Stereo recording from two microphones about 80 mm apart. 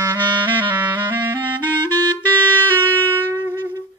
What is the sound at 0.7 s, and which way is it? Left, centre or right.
Clarinet, right.